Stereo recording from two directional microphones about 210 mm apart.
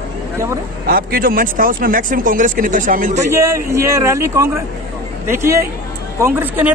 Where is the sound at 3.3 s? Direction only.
15° right (ahead or behind).